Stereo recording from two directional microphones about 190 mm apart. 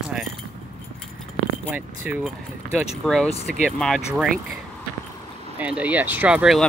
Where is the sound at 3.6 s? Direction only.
Centre (ahead or behind).